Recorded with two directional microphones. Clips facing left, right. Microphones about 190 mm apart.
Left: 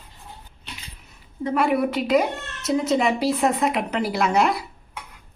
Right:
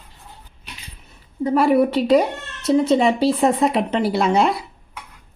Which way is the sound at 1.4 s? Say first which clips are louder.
Right 5 dB; 35° right (ahead or behind).